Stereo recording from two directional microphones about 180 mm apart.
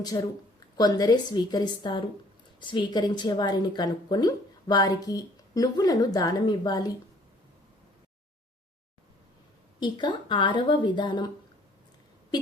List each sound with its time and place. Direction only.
0.1 s a woman's voice: 25° left (ahead or behind)
9.8 s a woman's voice: 25° left (ahead or behind)